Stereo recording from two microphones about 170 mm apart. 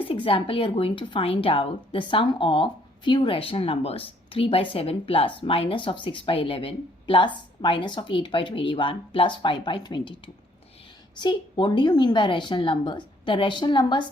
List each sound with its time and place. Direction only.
0.0 s speech: 30° left (ahead or behind)
11.2 s a woman's voice: 25° left (ahead or behind)